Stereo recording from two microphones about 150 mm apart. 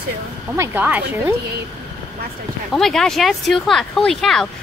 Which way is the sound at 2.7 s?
5° left (ahead or behind).